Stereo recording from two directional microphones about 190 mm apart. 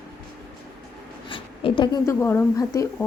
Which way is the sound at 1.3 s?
25° left (ahead or behind).